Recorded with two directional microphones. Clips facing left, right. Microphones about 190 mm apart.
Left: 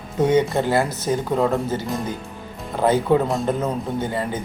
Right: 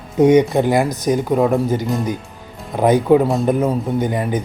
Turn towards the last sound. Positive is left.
turn(degrees=-15)  # may be behind; listen again after turning